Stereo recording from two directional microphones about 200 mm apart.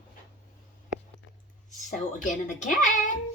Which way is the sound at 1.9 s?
40° left (ahead or behind).